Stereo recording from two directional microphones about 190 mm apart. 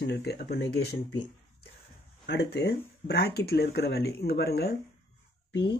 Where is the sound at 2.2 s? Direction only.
60° left (ahead or behind).